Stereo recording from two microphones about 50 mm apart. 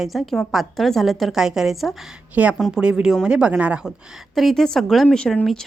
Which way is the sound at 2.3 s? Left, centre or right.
Right.